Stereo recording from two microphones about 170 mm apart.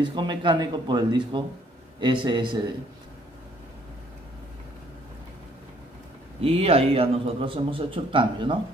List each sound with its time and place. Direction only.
0.0 s speech: 25° right (ahead or behind)
6.4 s a man's voice: 35° right (ahead or behind)